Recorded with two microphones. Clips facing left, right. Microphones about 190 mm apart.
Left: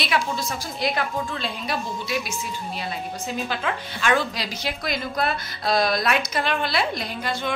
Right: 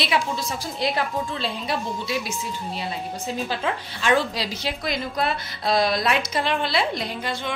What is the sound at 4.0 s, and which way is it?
A woman's voice, 25° right (ahead or behind).